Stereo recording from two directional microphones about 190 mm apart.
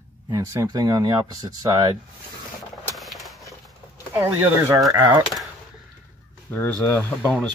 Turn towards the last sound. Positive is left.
turn(degrees=10)  # may be behind; listen again after turning